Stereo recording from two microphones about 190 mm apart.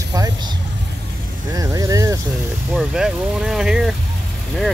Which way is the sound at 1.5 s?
20° right (ahead or behind).